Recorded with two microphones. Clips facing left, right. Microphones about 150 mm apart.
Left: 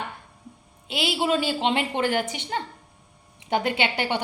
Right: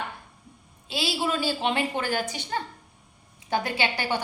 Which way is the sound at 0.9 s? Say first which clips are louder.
Left 4 dB; 20° left (ahead or behind).